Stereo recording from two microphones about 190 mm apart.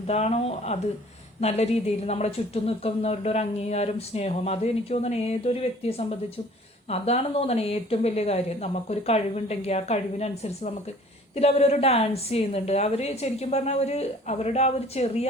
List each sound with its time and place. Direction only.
0.1 s speech: 35° left (ahead or behind)